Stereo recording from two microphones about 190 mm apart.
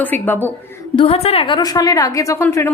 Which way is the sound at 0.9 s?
30° left (ahead or behind).